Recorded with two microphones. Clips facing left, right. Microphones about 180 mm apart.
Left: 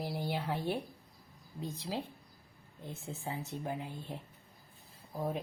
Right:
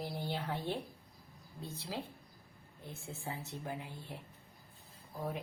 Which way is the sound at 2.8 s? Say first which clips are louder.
Left 4 dB; 20° left (ahead or behind).